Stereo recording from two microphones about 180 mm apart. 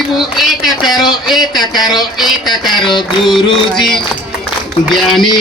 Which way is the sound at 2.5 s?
25° left (ahead or behind).